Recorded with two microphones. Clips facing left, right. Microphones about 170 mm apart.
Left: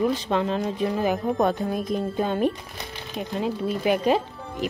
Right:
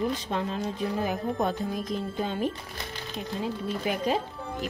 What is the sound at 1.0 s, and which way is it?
Speech, 65° left (ahead or behind).